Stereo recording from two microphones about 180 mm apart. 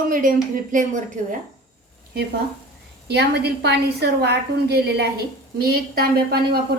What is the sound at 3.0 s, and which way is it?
A woman's voice, 65° right (ahead or behind).